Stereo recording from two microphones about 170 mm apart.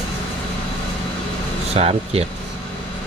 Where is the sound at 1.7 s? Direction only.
35° right (ahead or behind).